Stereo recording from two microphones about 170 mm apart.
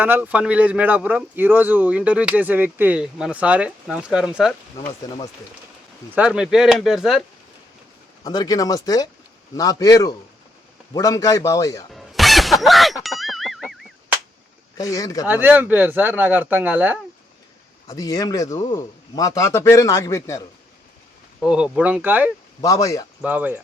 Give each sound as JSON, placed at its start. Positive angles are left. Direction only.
{"t": 0.0, "sound": "speech", "side_deg": -10}
{"t": 5.0, "sound": "a man's voice", "side_deg": 20}
{"t": 6.1, "sound": "speech", "side_deg": -5}
{"t": 8.2, "sound": "a man's voice", "side_deg": 20}
{"t": 11.9, "sound": "a sound", "side_deg": 0}
{"t": 14.8, "sound": "a man's voice", "side_deg": 20}
{"t": 15.3, "sound": "speech", "side_deg": -10}
{"t": 17.8, "sound": "a man's voice", "side_deg": 20}
{"t": 21.4, "sound": "speech", "side_deg": -5}
{"t": 22.6, "sound": "a man's voice", "side_deg": 20}
{"t": 23.2, "sound": "speech", "side_deg": -10}